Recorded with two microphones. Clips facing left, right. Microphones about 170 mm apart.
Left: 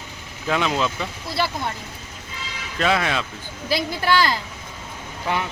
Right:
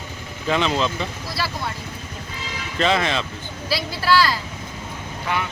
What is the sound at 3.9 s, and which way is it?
Speech, 50° left (ahead or behind).